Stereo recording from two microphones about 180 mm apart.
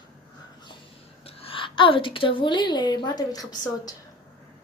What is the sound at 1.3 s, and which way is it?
A woman's voice, 30° left (ahead or behind).